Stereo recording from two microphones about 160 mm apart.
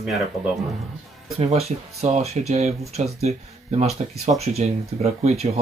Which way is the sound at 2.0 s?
40° right (ahead or behind).